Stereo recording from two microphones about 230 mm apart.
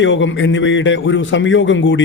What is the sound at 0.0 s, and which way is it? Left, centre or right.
A man's voice, left.